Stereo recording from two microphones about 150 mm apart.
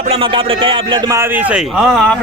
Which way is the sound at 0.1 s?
35° right (ahead or behind).